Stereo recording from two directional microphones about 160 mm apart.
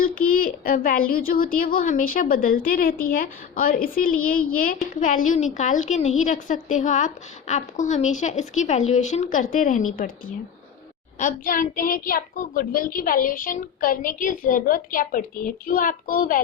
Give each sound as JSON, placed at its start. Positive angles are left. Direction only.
{"t": 0.0, "sound": "speech", "side_deg": 65}
{"t": 11.2, "sound": "speech", "side_deg": 55}